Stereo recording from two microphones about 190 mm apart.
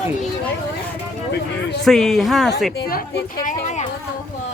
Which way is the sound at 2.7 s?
50° left (ahead or behind).